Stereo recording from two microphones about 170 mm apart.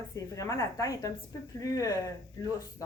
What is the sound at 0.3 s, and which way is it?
A woman's voice, 20° left (ahead or behind).